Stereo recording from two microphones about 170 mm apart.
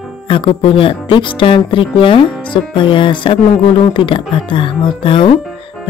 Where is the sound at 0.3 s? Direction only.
30° left (ahead or behind).